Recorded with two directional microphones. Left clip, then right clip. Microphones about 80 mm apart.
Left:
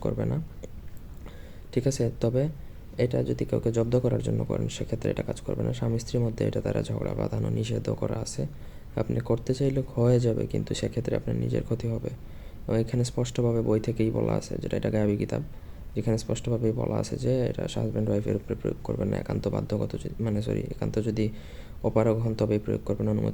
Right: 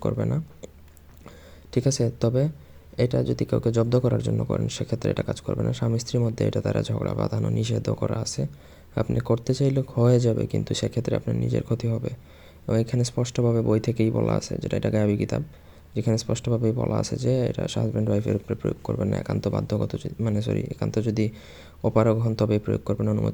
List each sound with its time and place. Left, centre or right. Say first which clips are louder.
0.0 s speech: right 3 dB; right
1.7 s speech: right 3 dB; right
23.0 s speech: right 2 dB; centre